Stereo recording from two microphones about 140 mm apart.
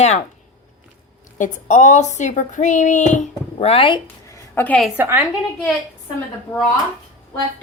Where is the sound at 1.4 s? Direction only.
60° left (ahead or behind); by 4.0 s 40° left (ahead or behind).